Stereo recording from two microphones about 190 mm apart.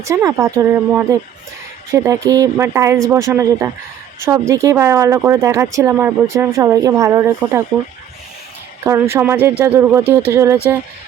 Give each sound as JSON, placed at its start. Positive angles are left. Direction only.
{"t": 0.0, "sound": "speech", "side_deg": -15}
{"t": 8.8, "sound": "speech", "side_deg": -15}